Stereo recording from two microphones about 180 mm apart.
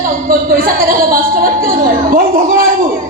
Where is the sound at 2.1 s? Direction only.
50° right (ahead or behind).